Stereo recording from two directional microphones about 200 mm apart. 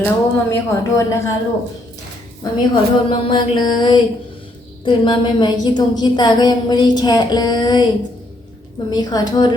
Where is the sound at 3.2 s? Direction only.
25° left (ahead or behind).